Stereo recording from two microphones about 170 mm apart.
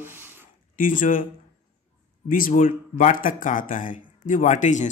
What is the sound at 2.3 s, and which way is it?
Speech, 55° left (ahead or behind).